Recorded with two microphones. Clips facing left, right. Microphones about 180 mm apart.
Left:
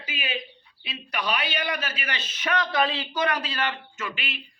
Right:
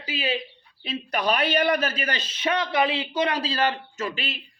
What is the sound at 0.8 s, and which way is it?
Speech, 45° right (ahead or behind).